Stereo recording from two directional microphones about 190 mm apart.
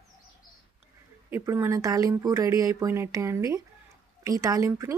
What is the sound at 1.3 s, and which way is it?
A woman's voice, 15° right (ahead or behind).